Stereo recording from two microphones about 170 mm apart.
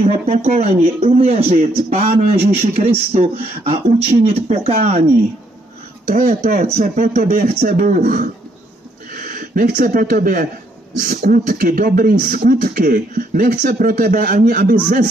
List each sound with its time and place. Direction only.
0.0 s a man's voice: 40° right (ahead or behind)
6.2 s speech: 45° right (ahead or behind)